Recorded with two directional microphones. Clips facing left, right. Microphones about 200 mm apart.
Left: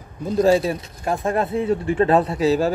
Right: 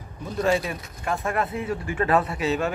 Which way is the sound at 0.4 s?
35° left (ahead or behind).